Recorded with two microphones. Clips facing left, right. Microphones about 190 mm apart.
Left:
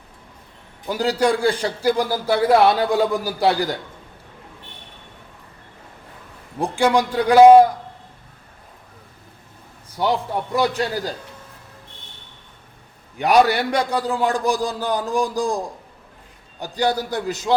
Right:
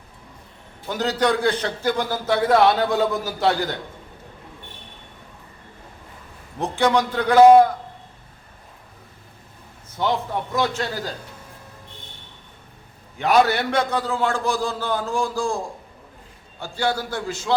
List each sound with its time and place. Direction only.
0.9 s a man's voice: 10° left (ahead or behind)
6.6 s a man's voice: 10° left (ahead or behind)
10.0 s a man's voice: 10° left (ahead or behind)
13.1 s a man's voice: 15° left (ahead or behind)